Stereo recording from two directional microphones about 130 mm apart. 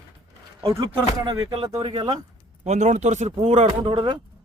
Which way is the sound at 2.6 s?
65° right (ahead or behind).